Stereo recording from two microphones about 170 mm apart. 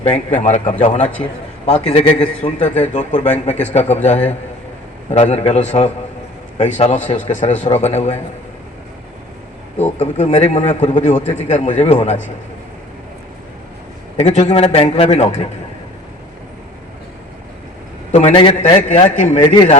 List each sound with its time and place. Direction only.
0.3 s a man's voice: 45° left (ahead or behind)
1.0 s a man's voice: 5° left (ahead or behind)
1.6 s a man's voice: 40° left (ahead or behind)
9.7 s a man's voice: 40° left (ahead or behind)
11.0 s a man's voice: 45° left (ahead or behind)
14.2 s a man's voice: 40° left (ahead or behind)
18.1 s a man's voice: 40° left (ahead or behind)